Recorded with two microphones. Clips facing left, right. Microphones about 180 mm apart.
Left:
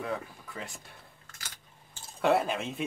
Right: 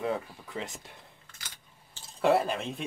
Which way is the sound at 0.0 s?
20° right (ahead or behind).